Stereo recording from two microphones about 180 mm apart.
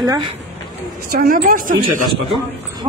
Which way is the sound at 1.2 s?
50° right (ahead or behind).